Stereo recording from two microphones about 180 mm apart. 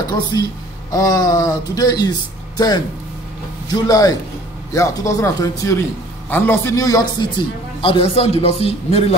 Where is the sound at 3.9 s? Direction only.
20° left (ahead or behind).